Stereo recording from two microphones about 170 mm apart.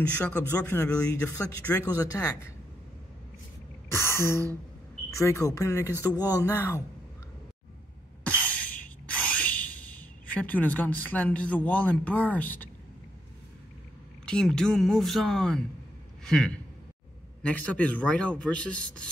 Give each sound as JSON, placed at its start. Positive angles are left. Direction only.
{"t": 0.2, "sound": "speech", "side_deg": 10}
{"t": 2.0, "sound": "a man's voice", "side_deg": 20}
{"t": 3.9, "sound": "speech", "side_deg": 15}
{"t": 8.3, "sound": "a sound", "side_deg": 10}
{"t": 14.2, "sound": "a man's voice", "side_deg": 5}